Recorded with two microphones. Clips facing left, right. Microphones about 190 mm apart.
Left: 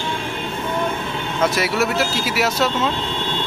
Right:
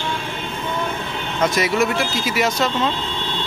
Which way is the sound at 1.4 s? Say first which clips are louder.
Right 1 dB; 5° left (ahead or behind).